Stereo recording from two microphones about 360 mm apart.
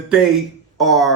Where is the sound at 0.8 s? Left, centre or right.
Centre.